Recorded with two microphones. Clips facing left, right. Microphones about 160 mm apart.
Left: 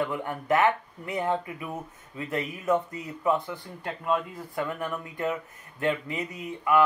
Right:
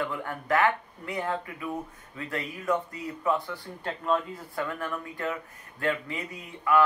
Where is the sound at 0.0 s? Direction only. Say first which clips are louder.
Left 3 dB; 20° left (ahead or behind).